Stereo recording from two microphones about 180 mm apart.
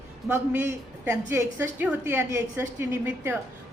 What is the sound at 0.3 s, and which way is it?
A woman's voice, 10° right (ahead or behind).